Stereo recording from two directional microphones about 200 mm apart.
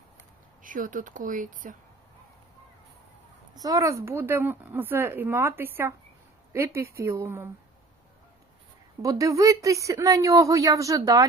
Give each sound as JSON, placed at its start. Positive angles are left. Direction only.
{"t": 0.6, "sound": "speech", "side_deg": -40}
{"t": 3.5, "sound": "a woman's voice", "side_deg": -20}
{"t": 9.0, "sound": "a woman's voice", "side_deg": -15}